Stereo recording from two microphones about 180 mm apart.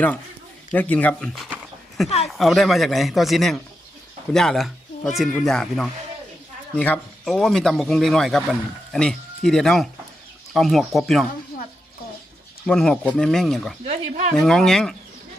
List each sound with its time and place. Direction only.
0.7 s speech: 10° left (ahead or behind)
12.6 s speech: 5° left (ahead or behind)
13.8 s speech: 40° right (ahead or behind)
14.3 s speech: centre (ahead or behind)